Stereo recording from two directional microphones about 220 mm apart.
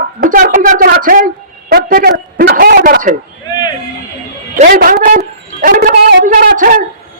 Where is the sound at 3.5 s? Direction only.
20° left (ahead or behind).